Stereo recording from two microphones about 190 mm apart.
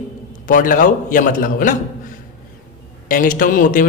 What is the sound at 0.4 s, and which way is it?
A man's voice, 45° left (ahead or behind).